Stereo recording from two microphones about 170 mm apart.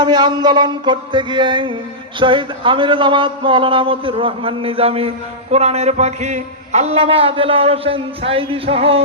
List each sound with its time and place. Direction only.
0.0 s music: 25° right (ahead or behind)
2.1 s speech: 30° right (ahead or behind)